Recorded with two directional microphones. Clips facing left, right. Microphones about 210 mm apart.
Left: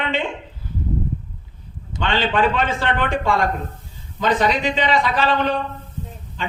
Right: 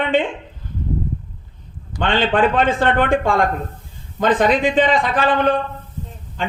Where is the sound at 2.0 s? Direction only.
50° right (ahead or behind).